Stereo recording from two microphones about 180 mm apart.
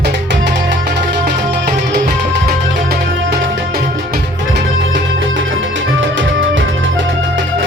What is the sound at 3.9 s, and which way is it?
Music, 70° right (ahead or behind).